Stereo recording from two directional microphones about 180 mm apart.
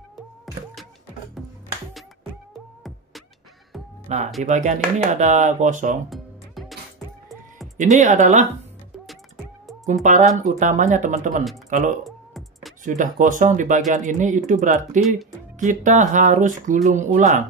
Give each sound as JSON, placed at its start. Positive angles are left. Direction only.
{"t": 4.4, "sound": "speech", "side_deg": -45}
{"t": 6.0, "sound": "music", "side_deg": 0}
{"t": 7.7, "sound": "speech", "side_deg": -40}
{"t": 10.0, "sound": "speech", "side_deg": -45}
{"t": 12.0, "sound": "typing", "side_deg": 0}
{"t": 12.8, "sound": "speech", "side_deg": -45}